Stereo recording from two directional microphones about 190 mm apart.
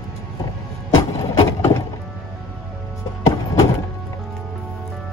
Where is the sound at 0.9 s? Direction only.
20° left (ahead or behind).